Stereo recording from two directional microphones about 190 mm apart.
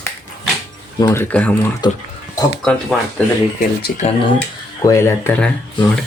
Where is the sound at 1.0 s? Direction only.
15° left (ahead or behind).